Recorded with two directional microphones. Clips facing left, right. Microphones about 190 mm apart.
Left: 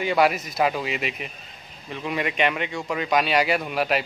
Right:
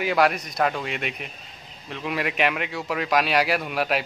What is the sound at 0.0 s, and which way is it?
Speech, centre (ahead or behind).